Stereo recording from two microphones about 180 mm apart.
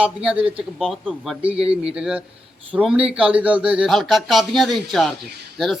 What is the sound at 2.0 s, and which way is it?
Speech, 5° right (ahead or behind).